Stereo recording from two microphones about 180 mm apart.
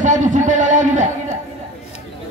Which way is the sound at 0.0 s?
45° right (ahead or behind).